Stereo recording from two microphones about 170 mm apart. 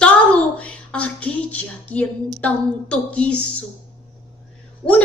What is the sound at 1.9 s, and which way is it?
A woman's voice, 5° left (ahead or behind).